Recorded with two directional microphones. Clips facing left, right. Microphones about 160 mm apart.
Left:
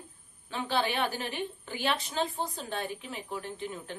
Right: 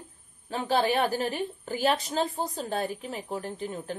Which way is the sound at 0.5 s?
40° right (ahead or behind).